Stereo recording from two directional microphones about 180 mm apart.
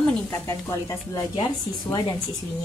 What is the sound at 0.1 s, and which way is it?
A woman's voice, 15° left (ahead or behind).